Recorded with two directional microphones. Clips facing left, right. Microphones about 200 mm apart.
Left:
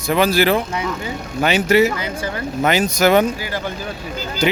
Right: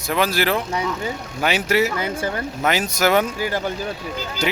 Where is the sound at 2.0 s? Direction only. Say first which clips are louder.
Right 1 dB; 50° right (ahead or behind).